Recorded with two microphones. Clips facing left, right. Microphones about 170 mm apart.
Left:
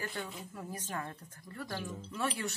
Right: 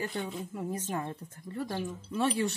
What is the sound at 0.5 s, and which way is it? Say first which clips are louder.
Speech: right 7 dB; 20° right (ahead or behind).